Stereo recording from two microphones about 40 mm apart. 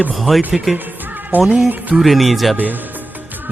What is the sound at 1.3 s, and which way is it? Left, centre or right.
Speech, right.